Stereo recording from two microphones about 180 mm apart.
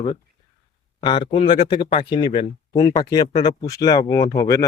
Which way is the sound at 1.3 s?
30° left (ahead or behind).